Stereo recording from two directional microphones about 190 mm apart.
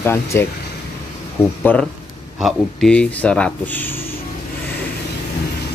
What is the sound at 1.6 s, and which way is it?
Speech, 10° left (ahead or behind).